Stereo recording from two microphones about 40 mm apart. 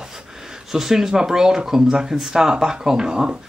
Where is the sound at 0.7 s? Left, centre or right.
Centre.